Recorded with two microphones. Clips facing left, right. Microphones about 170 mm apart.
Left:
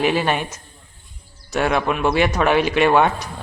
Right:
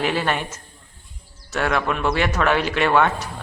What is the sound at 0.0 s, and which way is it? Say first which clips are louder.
A man's voice: left 3 dB; 15° left (ahead or behind).